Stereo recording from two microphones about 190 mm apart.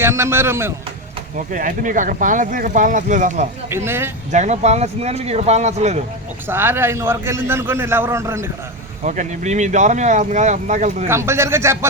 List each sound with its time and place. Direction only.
0.0 s a man's voice: 15° right (ahead or behind)
1.5 s speech: 45° right (ahead or behind)
3.7 s a man's voice: 10° right (ahead or behind)
4.3 s speech: 40° right (ahead or behind)
6.5 s a man's voice: 10° right (ahead or behind)
9.0 s speech: 40° right (ahead or behind)
11.1 s a man's voice: 15° right (ahead or behind)